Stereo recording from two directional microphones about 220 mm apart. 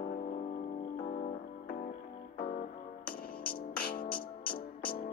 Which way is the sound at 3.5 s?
40° left (ahead or behind).